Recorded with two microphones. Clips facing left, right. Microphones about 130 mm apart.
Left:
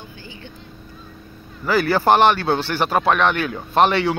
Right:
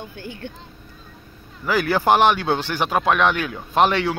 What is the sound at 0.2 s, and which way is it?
Speech, 60° right (ahead or behind).